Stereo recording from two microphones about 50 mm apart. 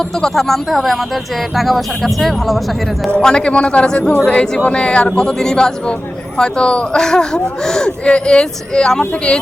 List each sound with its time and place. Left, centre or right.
0.2 s speech: centre
3.2 s a man's voice: centre